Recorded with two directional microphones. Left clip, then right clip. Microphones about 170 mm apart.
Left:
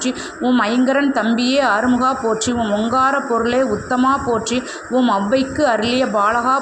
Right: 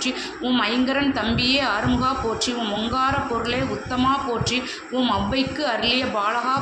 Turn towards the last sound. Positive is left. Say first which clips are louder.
# left 6 dB
turn(degrees=45)  # may be behind; listen again after turning